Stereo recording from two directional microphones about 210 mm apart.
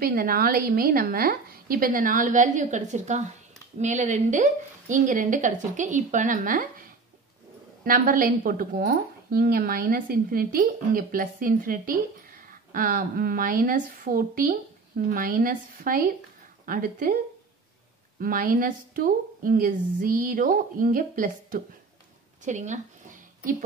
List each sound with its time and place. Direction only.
0.0 s a woman's voice: 45° right (ahead or behind)
18.2 s speech: 45° right (ahead or behind)
22.4 s a sound: 35° right (ahead or behind)